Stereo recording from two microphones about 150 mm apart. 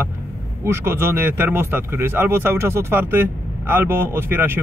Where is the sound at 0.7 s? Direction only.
15° right (ahead or behind).